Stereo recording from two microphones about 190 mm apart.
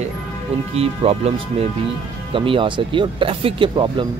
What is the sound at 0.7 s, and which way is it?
Speech, 30° right (ahead or behind).